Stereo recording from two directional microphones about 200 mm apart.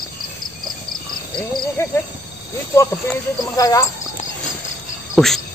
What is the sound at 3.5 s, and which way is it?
Speech, 15° left (ahead or behind).